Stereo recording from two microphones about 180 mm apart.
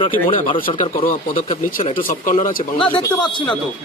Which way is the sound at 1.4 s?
30° left (ahead or behind).